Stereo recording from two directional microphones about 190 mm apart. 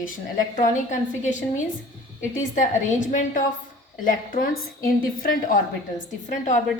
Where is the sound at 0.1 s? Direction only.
40° left (ahead or behind).